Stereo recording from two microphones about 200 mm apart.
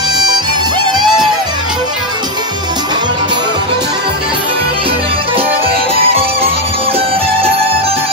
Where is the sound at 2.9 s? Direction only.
20° right (ahead or behind).